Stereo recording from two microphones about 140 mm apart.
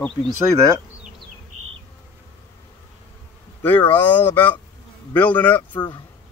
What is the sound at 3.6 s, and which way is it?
Speech, 15° left (ahead or behind).